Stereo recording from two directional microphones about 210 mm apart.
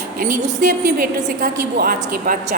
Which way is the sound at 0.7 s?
45° right (ahead or behind).